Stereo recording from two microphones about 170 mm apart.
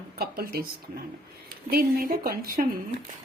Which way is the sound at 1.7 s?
60° right (ahead or behind).